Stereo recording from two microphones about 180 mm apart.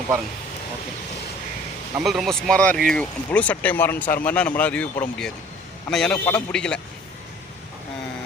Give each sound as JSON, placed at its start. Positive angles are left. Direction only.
{"t": 2.0, "sound": "a man's voice", "side_deg": 0}